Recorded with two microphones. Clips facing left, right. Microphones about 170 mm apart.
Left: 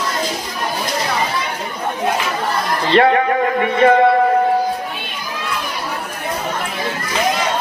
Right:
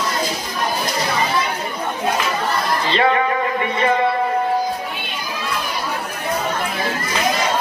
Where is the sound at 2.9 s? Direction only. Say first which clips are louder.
Left 6 dB; 55° left (ahead or behind).